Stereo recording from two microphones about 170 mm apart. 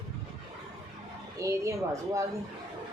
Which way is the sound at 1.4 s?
20° right (ahead or behind).